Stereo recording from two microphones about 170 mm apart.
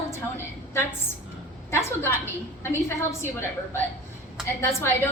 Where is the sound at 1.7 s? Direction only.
15° left (ahead or behind).